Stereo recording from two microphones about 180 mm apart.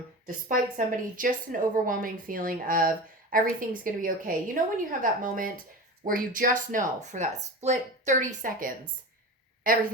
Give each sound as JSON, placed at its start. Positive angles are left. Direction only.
{"t": 0.3, "sound": "speech", "side_deg": -45}